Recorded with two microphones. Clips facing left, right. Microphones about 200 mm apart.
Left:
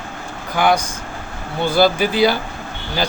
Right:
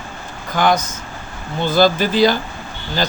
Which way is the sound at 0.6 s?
10° left (ahead or behind).